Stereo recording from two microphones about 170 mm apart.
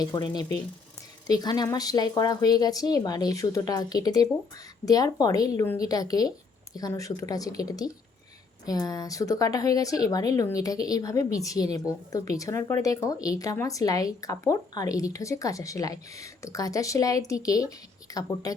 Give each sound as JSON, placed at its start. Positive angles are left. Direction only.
{"t": 0.0, "sound": "speech", "side_deg": 25}